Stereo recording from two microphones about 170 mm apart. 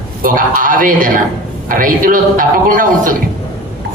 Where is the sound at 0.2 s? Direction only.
55° right (ahead or behind).